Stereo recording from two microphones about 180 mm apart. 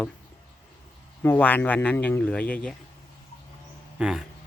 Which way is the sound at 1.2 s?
10° left (ahead or behind).